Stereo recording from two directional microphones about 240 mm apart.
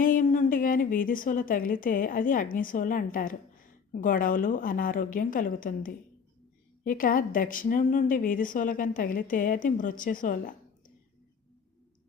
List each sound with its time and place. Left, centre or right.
0.0 s a woman's voice: left